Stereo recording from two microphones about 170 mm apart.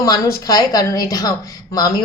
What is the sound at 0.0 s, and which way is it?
A woman's voice, 20° left (ahead or behind).